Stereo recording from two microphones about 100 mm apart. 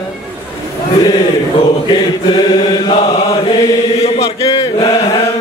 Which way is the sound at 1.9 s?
50° left (ahead or behind).